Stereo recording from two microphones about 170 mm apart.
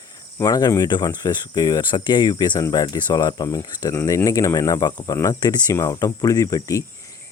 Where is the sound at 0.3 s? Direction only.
20° left (ahead or behind).